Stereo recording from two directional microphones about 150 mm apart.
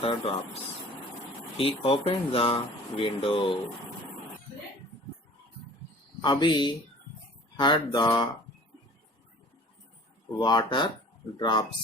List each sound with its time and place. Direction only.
0.0 s speech: 40° left (ahead or behind)
6.2 s speech: 30° left (ahead or behind)
10.3 s speech: 30° left (ahead or behind)